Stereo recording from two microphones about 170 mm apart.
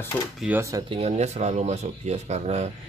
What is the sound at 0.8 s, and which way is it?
Speech, 35° right (ahead or behind).